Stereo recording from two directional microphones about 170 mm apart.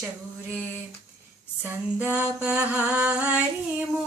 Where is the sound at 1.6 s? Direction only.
10° right (ahead or behind).